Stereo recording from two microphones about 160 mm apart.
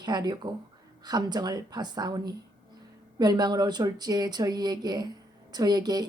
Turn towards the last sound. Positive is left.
turn(degrees=-25)  # may be behind; listen again after turning